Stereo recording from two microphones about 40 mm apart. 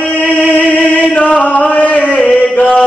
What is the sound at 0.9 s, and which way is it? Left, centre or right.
Chant, left.